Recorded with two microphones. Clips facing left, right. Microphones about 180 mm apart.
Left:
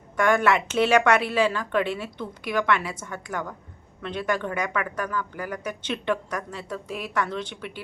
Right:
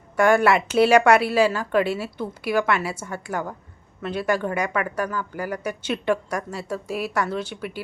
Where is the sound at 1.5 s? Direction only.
40° right (ahead or behind).